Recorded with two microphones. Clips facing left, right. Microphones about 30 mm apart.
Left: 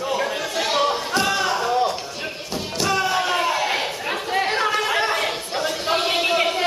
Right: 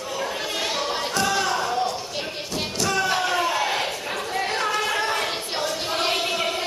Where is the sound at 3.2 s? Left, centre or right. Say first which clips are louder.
Left 2 dB; centre.